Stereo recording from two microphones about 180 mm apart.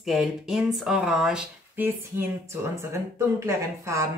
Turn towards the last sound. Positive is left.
turn(degrees=-15)  # may be behind; listen again after turning